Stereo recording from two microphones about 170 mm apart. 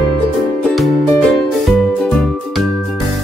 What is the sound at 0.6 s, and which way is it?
Music, 5° left (ahead or behind).